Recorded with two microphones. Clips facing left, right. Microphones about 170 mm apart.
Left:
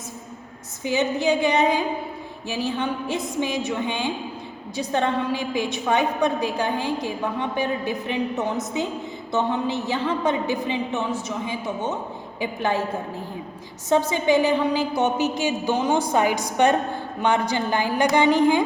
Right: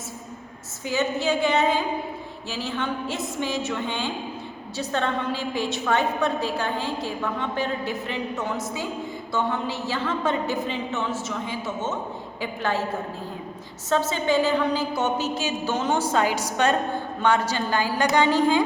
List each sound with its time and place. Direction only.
0.9 s a woman's voice: 15° left (ahead or behind)
13.9 s a woman's voice: 15° left (ahead or behind)